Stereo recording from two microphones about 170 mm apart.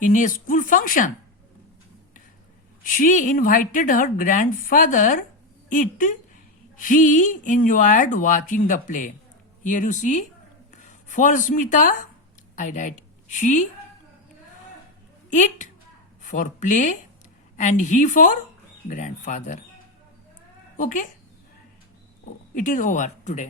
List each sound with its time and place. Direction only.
0.0 s speech: 50° left (ahead or behind)
2.8 s a woman's voice: 55° left (ahead or behind)
15.3 s a woman's voice: 45° left (ahead or behind)
22.5 s speech: 50° left (ahead or behind)